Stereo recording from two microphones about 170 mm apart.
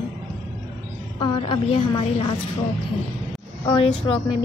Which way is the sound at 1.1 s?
25° left (ahead or behind).